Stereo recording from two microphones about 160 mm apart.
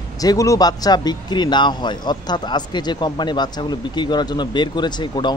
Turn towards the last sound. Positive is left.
turn(degrees=30)  # may be behind; listen again after turning